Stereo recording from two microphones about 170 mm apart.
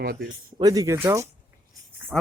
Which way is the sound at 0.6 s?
20° right (ahead or behind).